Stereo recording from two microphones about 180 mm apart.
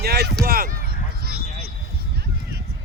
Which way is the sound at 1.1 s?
60° right (ahead or behind).